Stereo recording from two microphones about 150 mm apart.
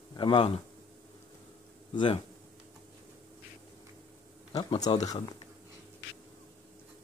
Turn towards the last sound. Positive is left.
turn(degrees=25)  # may be behind; listen again after turning